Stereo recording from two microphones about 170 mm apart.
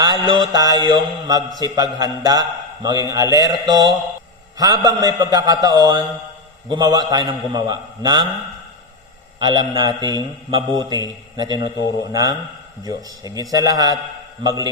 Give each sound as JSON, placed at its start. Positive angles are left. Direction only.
{"t": 0.0, "sound": "a man's voice", "side_deg": -25}
{"t": 9.4, "sound": "a man's voice", "side_deg": -25}
{"t": 12.8, "sound": "a man's voice", "side_deg": -20}